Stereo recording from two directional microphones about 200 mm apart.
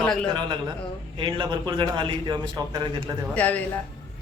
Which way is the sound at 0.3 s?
20° right (ahead or behind).